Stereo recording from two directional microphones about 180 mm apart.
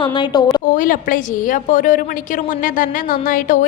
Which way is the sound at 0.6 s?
50° left (ahead or behind).